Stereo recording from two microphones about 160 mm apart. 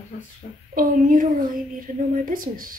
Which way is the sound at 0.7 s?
60° right (ahead or behind).